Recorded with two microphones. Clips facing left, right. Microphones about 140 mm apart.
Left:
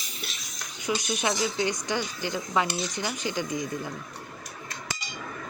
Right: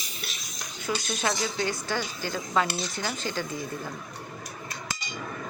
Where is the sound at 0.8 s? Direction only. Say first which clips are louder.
Left 1 dB; 15° left (ahead or behind).